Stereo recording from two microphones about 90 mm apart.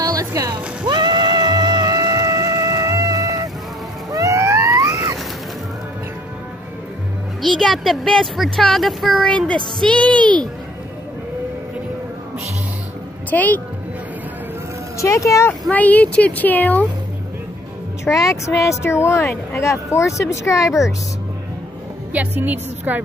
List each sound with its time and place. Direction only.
0.0 s music: 40° right (ahead or behind)
0.8 s music: 55° right (ahead or behind)
4.1 s vehicle: 35° right (ahead or behind)
7.4 s speech: 5° left (ahead or behind)
9.8 s speech: 15° left (ahead or behind)
13.3 s speech: 20° left (ahead or behind)
15.0 s speech: 35° left (ahead or behind)
15.7 s speech: 15° left (ahead or behind)
18.0 s speech: 35° left (ahead or behind)
22.1 s a woman's voice: 20° right (ahead or behind)